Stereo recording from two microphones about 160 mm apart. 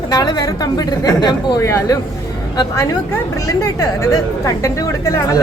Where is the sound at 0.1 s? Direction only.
25° left (ahead or behind).